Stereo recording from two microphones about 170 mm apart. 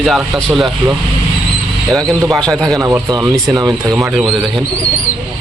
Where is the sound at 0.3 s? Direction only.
Centre (ahead or behind).